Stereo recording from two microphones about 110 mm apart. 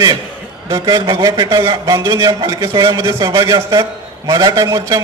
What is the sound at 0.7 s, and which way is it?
A man's voice, 40° right (ahead or behind).